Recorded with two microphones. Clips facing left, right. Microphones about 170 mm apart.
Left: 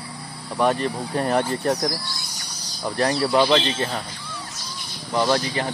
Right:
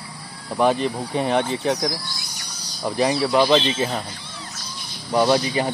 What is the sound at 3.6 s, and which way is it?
Speech, 15° right (ahead or behind).